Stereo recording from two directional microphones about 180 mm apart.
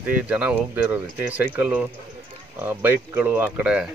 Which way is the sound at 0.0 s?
5° right (ahead or behind).